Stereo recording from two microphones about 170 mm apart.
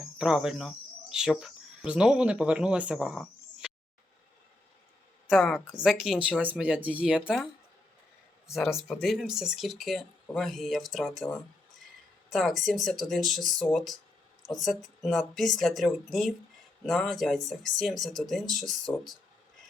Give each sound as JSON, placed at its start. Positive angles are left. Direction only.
{"t": 0.2, "sound": "speech", "side_deg": -5}
{"t": 5.4, "sound": "a woman's voice", "side_deg": 10}
{"t": 5.7, "sound": "speech", "side_deg": -5}
{"t": 8.4, "sound": "a woman's voice", "side_deg": 0}